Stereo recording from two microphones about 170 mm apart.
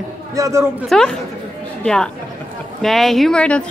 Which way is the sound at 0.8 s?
5° left (ahead or behind).